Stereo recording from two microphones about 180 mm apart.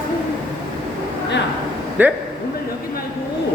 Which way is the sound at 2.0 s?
10° right (ahead or behind).